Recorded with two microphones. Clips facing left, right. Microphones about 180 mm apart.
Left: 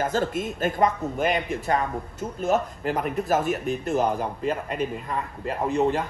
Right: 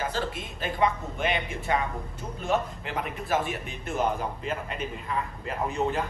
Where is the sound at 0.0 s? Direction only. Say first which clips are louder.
Left 6 dB; 50° left (ahead or behind).